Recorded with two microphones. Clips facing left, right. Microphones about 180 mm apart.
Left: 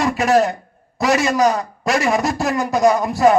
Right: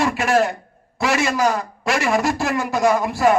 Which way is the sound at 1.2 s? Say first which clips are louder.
Left 3 dB; 40° left (ahead or behind).